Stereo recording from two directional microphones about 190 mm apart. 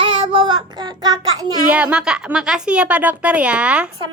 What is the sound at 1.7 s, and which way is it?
A woman's voice, 5° right (ahead or behind).